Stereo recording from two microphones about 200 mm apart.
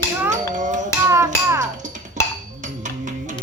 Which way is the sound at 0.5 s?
40° right (ahead or behind).